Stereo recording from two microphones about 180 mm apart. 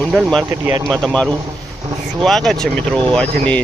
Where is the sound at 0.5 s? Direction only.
15° right (ahead or behind).